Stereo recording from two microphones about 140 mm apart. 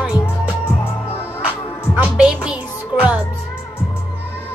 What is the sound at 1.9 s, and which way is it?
Music, 5° right (ahead or behind).